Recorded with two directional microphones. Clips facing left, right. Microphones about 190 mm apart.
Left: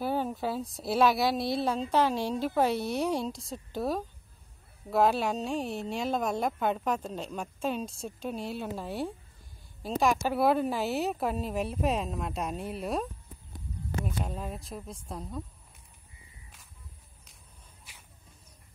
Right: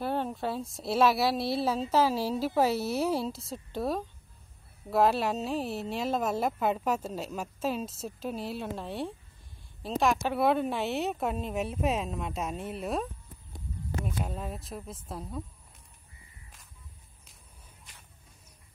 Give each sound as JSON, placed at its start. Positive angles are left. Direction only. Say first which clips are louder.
{"t": 0.0, "sound": "a woman's voice", "louder": "left 1 dB", "side_deg": 0}